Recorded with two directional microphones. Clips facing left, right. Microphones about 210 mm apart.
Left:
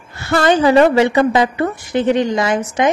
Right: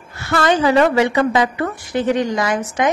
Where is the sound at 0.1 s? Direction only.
30° left (ahead or behind).